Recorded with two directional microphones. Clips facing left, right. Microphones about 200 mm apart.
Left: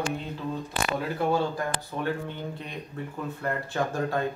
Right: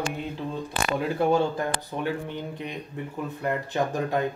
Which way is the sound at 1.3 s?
20° right (ahead or behind).